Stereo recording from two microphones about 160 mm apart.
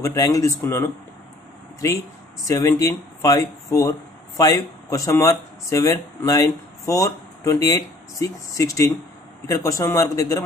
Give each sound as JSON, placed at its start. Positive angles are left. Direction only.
{"t": 0.0, "sound": "speech", "side_deg": 20}